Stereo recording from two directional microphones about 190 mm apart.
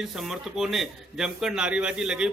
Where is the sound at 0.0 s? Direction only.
Centre (ahead or behind).